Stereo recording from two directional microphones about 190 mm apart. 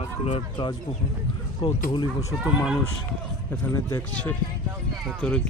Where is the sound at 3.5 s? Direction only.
15° left (ahead or behind).